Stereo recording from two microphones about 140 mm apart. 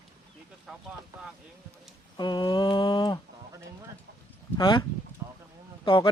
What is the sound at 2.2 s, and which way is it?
Mantra, 30° left (ahead or behind).